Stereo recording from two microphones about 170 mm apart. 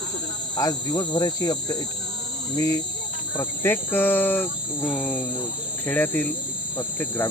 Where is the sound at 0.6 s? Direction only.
20° left (ahead or behind).